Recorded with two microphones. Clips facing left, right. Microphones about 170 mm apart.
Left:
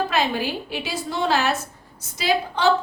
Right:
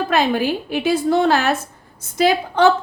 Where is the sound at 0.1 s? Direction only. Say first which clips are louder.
Right 5 dB; 50° right (ahead or behind).